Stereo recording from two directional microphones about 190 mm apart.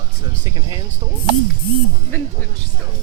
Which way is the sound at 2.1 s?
15° left (ahead or behind).